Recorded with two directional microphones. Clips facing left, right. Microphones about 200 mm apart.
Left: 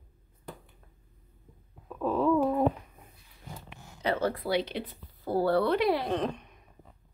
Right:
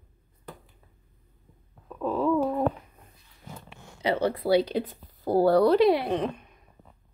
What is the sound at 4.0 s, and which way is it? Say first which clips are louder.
Speech: right 3 dB; 15° right (ahead or behind).